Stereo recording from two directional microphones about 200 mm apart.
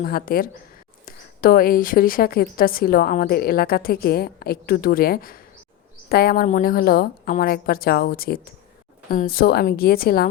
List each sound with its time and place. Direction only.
0.0 s a woman's voice: 50° left (ahead or behind)